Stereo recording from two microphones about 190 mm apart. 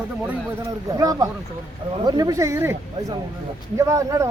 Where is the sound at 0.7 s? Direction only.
20° right (ahead or behind).